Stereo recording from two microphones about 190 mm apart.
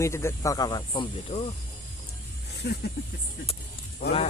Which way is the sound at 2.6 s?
60° left (ahead or behind).